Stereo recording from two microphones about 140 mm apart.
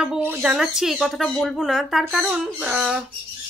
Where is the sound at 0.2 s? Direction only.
10° right (ahead or behind).